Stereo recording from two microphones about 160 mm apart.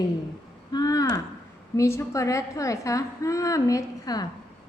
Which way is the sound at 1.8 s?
20° left (ahead or behind).